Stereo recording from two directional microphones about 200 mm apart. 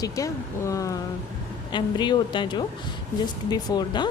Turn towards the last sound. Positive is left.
turn(degrees=20)  # may be behind; listen again after turning